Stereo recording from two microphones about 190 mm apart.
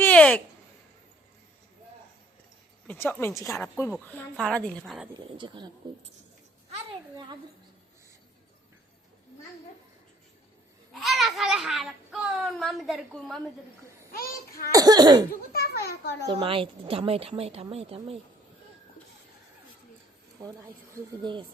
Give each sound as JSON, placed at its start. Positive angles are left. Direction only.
{"t": 0.0, "sound": "a sound", "side_deg": 10}
{"t": 2.8, "sound": "a child's voice", "side_deg": 10}
{"t": 5.1, "sound": "a child's voice", "side_deg": -25}
{"t": 10.9, "sound": "a child's voice", "side_deg": 0}
{"t": 14.7, "sound": "a child's voice", "side_deg": -20}
{"t": 15.5, "sound": "a child's voice", "side_deg": 55}
{"t": 16.2, "sound": "a woman's voice", "side_deg": -30}
{"t": 21.2, "sound": "a child's voice", "side_deg": -25}